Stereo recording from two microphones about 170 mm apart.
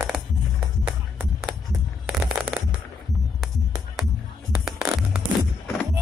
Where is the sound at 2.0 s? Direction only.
5° right (ahead or behind).